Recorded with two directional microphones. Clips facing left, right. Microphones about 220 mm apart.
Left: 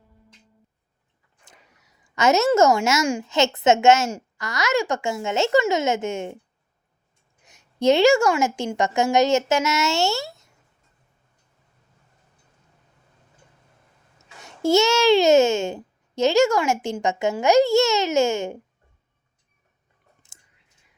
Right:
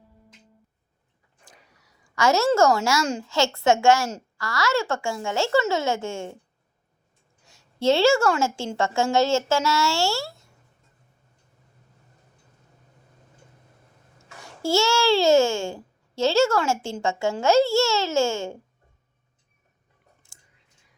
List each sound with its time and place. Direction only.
1.5 s a sound: 20° left (ahead or behind)
3.1 s a woman's voice: 15° left (ahead or behind)
7.4 s a child's voice: 20° left (ahead or behind)
14.4 s a child's voice: 20° left (ahead or behind)
20.2 s whispering: 20° left (ahead or behind)